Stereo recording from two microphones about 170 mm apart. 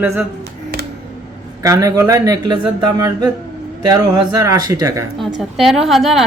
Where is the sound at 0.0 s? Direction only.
15° right (ahead or behind).